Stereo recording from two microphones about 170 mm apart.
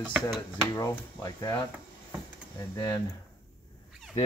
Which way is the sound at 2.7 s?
20° left (ahead or behind).